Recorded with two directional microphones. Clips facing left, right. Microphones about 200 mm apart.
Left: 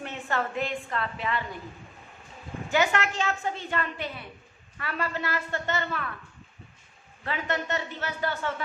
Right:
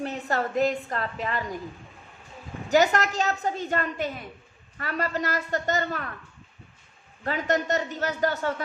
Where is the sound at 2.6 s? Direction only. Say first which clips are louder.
Right 4 dB; 40° right (ahead or behind).